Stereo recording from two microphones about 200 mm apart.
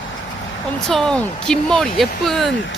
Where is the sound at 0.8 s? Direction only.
5° left (ahead or behind).